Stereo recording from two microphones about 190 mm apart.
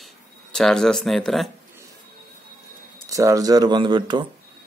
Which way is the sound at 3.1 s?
15° right (ahead or behind).